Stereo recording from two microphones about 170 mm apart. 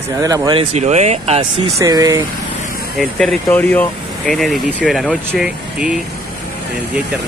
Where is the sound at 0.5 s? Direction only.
40° right (ahead or behind).